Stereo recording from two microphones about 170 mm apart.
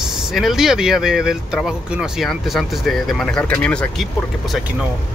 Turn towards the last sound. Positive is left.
turn(degrees=0)  # may be behind; listen again after turning